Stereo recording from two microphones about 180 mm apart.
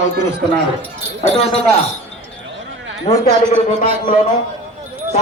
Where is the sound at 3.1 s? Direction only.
35° left (ahead or behind).